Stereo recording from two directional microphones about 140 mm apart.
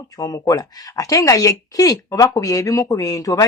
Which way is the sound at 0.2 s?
25° left (ahead or behind).